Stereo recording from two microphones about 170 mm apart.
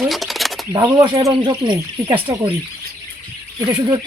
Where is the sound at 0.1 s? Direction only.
Centre (ahead or behind).